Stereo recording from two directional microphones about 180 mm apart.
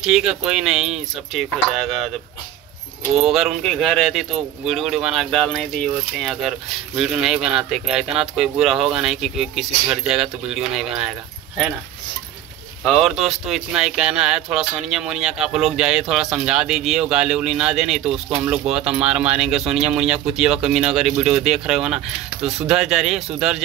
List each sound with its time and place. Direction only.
0.0 s speech: 5° right (ahead or behind)
3.2 s speech: centre (ahead or behind)
12.8 s speech: centre (ahead or behind)